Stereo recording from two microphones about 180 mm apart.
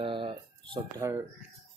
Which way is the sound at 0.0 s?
30° right (ahead or behind).